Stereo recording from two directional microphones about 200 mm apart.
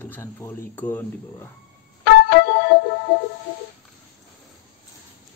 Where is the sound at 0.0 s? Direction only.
10° left (ahead or behind).